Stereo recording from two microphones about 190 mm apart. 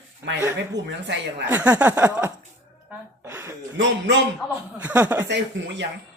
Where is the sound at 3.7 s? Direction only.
65° right (ahead or behind).